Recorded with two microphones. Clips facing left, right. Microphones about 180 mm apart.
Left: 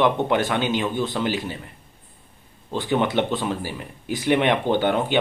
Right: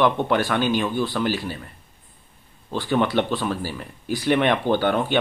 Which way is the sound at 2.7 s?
20° left (ahead or behind).